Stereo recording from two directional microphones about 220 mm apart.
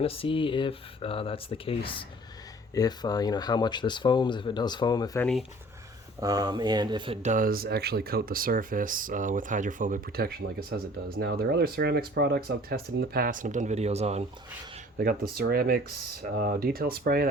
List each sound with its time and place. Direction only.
0.0 s speech: 25° left (ahead or behind)
5.2 s speech: centre (ahead or behind)
6.1 s speech: 15° right (ahead or behind)
14.9 s speech: 45° right (ahead or behind)